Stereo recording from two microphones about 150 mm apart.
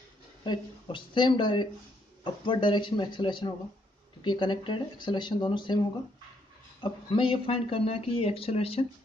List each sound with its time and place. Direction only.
0.4 s speech: 30° left (ahead or behind)
6.8 s speech: 35° left (ahead or behind)